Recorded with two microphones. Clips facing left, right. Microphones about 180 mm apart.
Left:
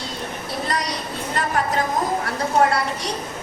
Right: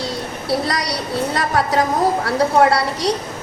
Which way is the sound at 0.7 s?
75° right (ahead or behind).